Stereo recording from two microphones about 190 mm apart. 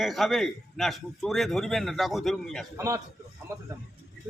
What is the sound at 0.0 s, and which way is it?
A man's voice, centre (ahead or behind).